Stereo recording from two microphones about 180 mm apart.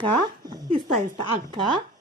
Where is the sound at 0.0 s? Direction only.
20° right (ahead or behind).